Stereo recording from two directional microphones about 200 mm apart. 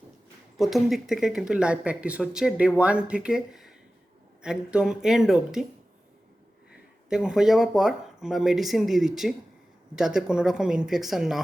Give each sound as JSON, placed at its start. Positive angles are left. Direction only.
{"t": 0.6, "sound": "speech", "side_deg": 0}
{"t": 7.1, "sound": "speech", "side_deg": -5}